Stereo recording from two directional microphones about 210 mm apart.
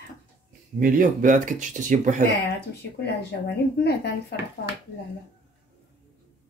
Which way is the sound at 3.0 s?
50° left (ahead or behind).